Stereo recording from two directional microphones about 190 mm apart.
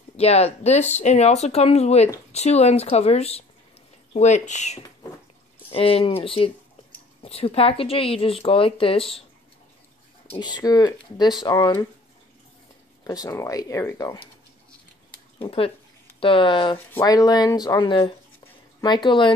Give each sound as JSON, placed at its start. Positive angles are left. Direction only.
{"t": 0.2, "sound": "speech", "side_deg": 35}
{"t": 10.3, "sound": "speech", "side_deg": 25}
{"t": 13.0, "sound": "speech", "side_deg": 20}
{"t": 15.4, "sound": "speech", "side_deg": 30}
{"t": 16.7, "sound": "speech", "side_deg": 15}